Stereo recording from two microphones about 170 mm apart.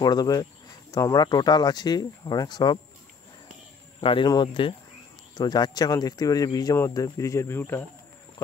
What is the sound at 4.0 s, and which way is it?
Speech, 30° left (ahead or behind).